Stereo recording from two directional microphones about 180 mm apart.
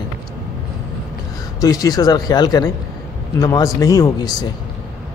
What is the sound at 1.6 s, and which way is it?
A man's voice, 20° left (ahead or behind).